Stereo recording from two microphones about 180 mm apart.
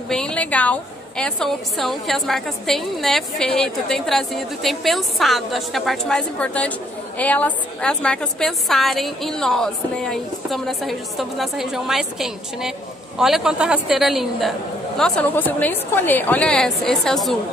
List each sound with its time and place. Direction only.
0.1 s a woman's voice: 5° left (ahead or behind)